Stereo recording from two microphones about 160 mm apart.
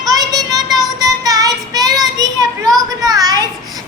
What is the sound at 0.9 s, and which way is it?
Child singing, 25° right (ahead or behind).